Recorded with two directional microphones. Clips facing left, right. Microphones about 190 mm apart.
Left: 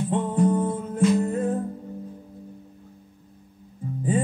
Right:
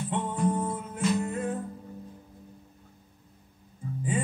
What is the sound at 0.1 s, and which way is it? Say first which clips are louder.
Music: left 6 dB; 35° left (ahead or behind).